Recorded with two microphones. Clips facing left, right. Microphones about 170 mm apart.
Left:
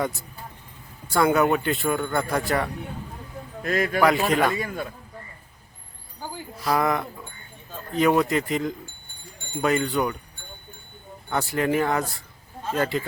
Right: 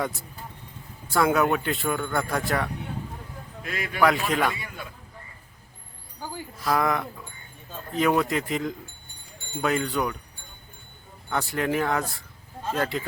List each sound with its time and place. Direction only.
1.1 s speech: centre (ahead or behind)
3.6 s speech: 45° left (ahead or behind)
4.0 s speech: centre (ahead or behind)
4.5 s speech: 45° left (ahead or behind)
6.7 s speech: centre (ahead or behind)
11.3 s speech: centre (ahead or behind)